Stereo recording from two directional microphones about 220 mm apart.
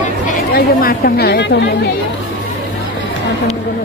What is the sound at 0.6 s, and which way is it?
Speech, 45° left (ahead or behind).